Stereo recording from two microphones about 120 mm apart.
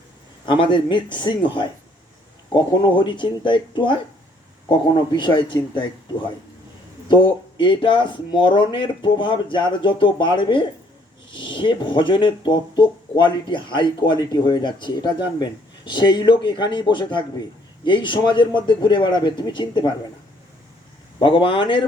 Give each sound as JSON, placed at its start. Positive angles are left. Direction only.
{"t": 0.4, "sound": "speech", "side_deg": 45}
{"t": 2.5, "sound": "speech", "side_deg": 40}
{"t": 4.9, "sound": "speech", "side_deg": 40}
{"t": 7.1, "sound": "speech", "side_deg": 40}
{"t": 21.2, "sound": "speech", "side_deg": 45}